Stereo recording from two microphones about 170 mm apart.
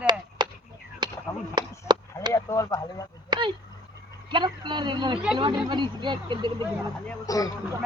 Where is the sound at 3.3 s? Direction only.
25° right (ahead or behind).